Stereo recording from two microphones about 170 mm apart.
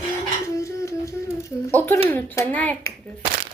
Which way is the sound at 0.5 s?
20° left (ahead or behind).